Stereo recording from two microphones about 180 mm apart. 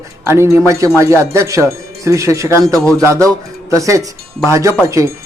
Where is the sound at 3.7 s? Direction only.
15° right (ahead or behind).